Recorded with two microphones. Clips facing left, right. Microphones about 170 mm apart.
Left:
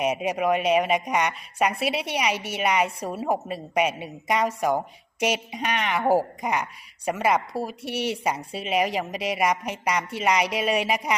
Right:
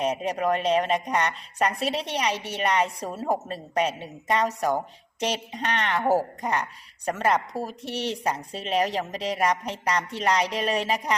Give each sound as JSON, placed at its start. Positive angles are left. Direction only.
{"t": 0.0, "sound": "speech", "side_deg": 10}